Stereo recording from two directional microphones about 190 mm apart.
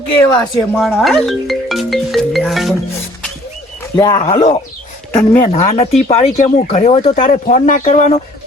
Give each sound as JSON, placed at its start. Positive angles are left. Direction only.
{"t": 0.7, "sound": "music", "side_deg": 0}
{"t": 3.9, "sound": "speech", "side_deg": 25}
{"t": 5.1, "sound": "speech", "side_deg": 15}
{"t": 5.5, "sound": "speech", "side_deg": 35}